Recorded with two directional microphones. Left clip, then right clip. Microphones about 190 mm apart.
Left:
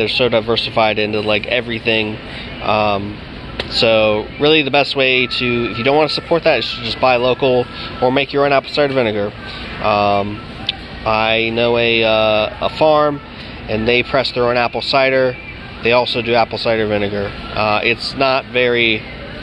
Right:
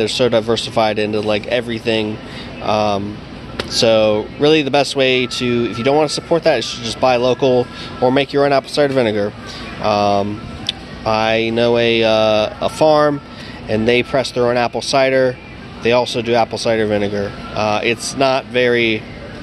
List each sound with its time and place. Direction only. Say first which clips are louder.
0.0 s speech: even; 20° right (ahead or behind)